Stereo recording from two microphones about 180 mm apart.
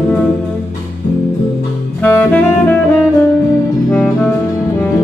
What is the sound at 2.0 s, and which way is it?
Saxophone, 10° left (ahead or behind).